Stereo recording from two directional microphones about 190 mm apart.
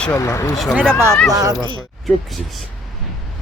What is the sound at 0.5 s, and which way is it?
Speech, centre (ahead or behind).